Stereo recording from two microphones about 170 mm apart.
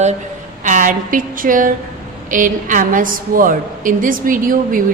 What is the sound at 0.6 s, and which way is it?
A woman's voice, 50° right (ahead or behind).